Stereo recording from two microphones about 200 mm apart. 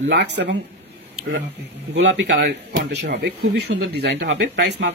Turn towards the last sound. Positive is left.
turn(degrees=-60)  # may be behind; listen again after turning